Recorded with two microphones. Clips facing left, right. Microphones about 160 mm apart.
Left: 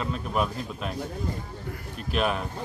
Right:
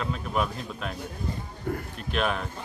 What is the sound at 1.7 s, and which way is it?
Speech, 50° right (ahead or behind).